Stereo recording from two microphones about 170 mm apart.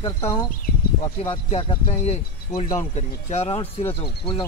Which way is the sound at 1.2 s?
35° left (ahead or behind).